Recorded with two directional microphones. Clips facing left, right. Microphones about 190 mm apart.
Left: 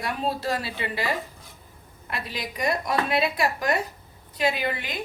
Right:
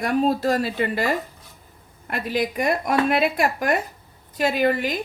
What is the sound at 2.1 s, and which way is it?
A woman's voice, 50° right (ahead or behind).